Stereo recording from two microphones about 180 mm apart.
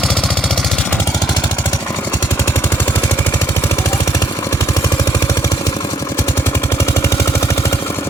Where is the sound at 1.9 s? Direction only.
15° left (ahead or behind).